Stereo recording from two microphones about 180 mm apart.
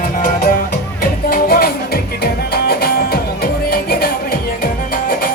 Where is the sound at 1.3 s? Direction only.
55° left (ahead or behind).